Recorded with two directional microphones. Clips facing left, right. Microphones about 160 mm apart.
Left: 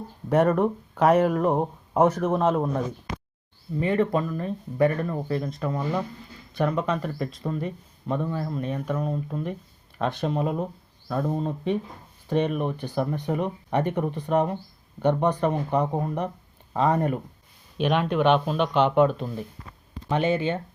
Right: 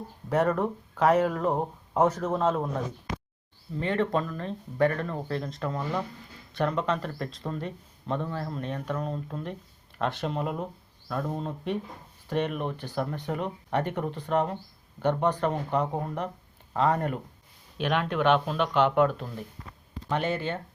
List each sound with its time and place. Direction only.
0.3 s speech: 15° left (ahead or behind)